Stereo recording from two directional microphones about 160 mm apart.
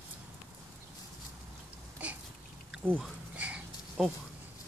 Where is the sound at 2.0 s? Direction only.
10° right (ahead or behind).